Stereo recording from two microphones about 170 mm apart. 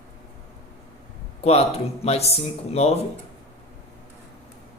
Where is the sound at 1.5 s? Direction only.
35° left (ahead or behind).